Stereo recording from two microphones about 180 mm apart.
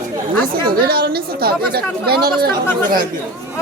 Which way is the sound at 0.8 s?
60° right (ahead or behind).